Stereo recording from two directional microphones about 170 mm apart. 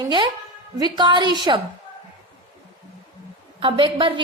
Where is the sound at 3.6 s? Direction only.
30° right (ahead or behind).